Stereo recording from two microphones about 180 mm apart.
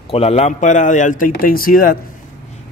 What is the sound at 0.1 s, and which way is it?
A man's voice, 35° left (ahead or behind).